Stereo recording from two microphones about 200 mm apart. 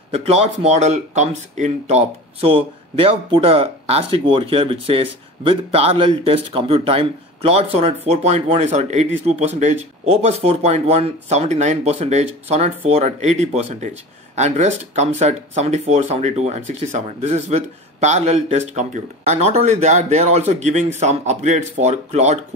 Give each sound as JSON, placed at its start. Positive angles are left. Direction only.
{"t": 0.1, "sound": "speech", "side_deg": -30}